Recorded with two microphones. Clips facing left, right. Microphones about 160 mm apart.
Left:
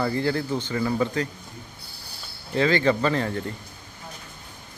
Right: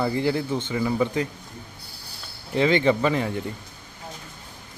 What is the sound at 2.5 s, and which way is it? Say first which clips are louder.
Speech: right 1 dB; 20° right (ahead or behind).